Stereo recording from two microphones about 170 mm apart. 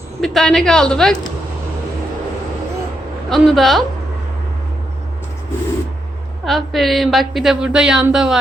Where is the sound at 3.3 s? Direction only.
Centre (ahead or behind).